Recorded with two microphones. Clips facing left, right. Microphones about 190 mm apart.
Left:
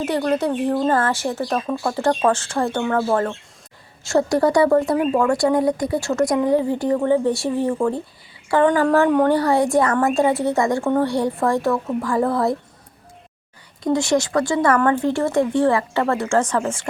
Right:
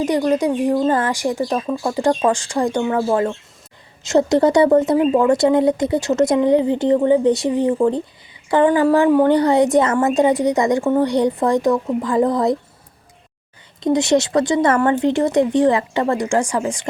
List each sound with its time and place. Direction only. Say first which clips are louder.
0.0 s a woman's voice: right 3 dB; 15° right (ahead or behind)
13.8 s speech: right 3 dB; 20° right (ahead or behind)